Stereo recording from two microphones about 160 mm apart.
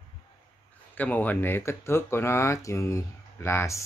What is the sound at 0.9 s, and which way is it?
Speech, 10° left (ahead or behind).